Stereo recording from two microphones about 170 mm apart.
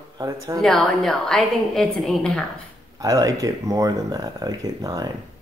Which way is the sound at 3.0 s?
20° right (ahead or behind).